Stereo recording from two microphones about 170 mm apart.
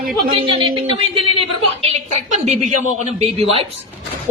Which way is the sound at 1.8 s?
45° right (ahead or behind).